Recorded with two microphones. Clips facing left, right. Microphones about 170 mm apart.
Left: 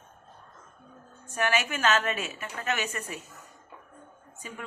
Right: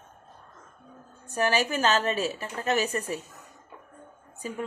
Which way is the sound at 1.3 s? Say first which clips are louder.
Right 3 dB; 35° right (ahead or behind).